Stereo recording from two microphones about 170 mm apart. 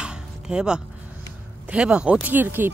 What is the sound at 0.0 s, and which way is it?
Music, 5° right (ahead or behind).